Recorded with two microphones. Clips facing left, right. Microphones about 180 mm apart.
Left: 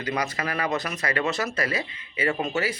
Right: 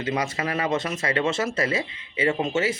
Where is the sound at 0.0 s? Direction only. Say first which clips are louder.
Right 2 dB; 25° right (ahead or behind).